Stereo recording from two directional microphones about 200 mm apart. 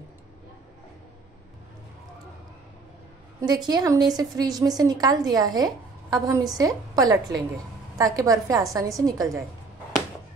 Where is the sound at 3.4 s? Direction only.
20° right (ahead or behind).